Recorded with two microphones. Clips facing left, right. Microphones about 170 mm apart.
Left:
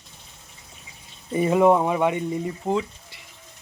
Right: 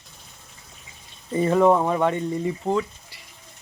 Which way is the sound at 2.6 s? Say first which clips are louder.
Right 1 dB; 20° left (ahead or behind).